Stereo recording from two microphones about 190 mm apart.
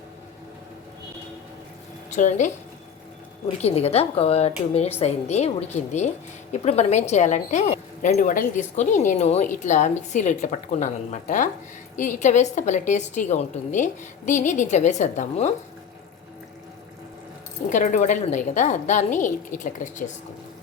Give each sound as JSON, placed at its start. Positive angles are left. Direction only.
{"t": 2.0, "sound": "a woman's voice", "side_deg": 40}
{"t": 3.6, "sound": "a woman's voice", "side_deg": 35}
{"t": 17.7, "sound": "a woman's voice", "side_deg": 40}